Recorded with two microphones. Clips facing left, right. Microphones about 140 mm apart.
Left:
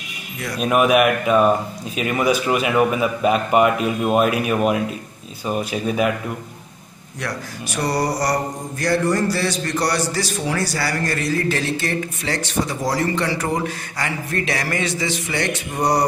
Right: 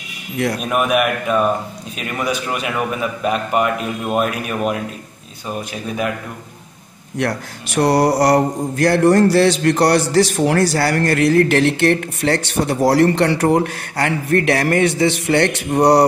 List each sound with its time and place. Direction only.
0.6 s a man's voice: centre (ahead or behind)
7.2 s speech: 60° right (ahead or behind)